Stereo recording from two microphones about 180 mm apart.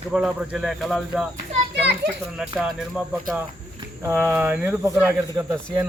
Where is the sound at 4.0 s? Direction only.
15° right (ahead or behind).